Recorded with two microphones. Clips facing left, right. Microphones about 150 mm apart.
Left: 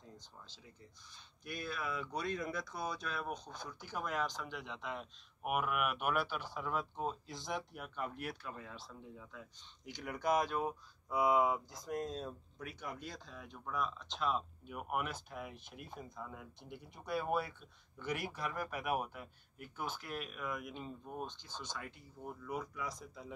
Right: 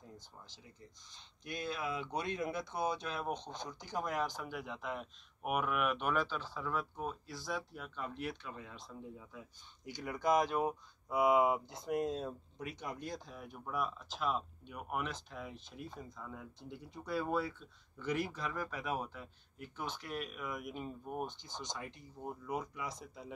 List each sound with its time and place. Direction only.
1.1 s speech: 20° right (ahead or behind); by 9.4 s centre (ahead or behind)
9.8 s speech: 10° right (ahead or behind)
11.1 s speech: 5° right (ahead or behind)
22.2 s speech: 25° right (ahead or behind)
22.8 s speech: centre (ahead or behind)